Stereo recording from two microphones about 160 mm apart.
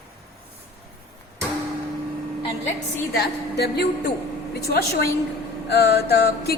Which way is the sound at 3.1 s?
85° left.